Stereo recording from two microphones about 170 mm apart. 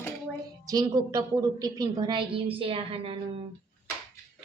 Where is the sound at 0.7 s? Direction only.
25° right (ahead or behind).